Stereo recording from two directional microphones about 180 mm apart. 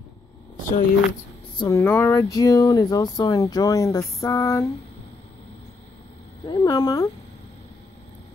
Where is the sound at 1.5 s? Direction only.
25° left (ahead or behind).